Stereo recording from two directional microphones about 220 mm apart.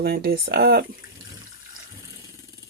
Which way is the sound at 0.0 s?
45° right (ahead or behind).